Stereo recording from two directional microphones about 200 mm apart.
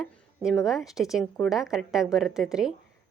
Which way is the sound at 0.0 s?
5° right (ahead or behind).